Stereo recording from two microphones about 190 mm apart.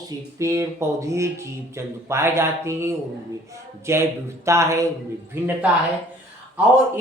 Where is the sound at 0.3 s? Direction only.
15° right (ahead or behind).